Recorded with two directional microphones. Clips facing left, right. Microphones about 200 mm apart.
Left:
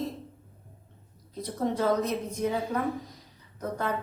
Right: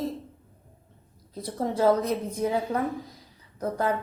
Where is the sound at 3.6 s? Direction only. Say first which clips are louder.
Right 4 dB; 30° right (ahead or behind).